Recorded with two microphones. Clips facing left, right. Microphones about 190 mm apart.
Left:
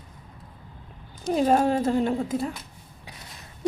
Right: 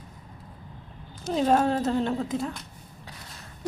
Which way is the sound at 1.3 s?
10° left (ahead or behind).